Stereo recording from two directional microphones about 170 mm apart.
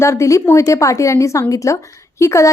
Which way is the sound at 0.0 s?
15° left (ahead or behind).